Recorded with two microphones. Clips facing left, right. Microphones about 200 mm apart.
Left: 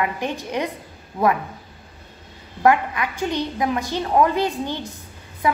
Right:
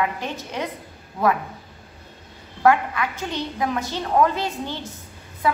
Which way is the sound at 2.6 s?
15° left (ahead or behind).